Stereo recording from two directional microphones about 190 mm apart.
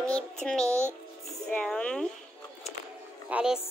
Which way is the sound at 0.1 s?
5° left (ahead or behind).